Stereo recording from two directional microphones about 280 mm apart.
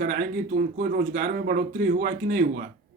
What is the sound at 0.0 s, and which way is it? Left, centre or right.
A man's voice, right.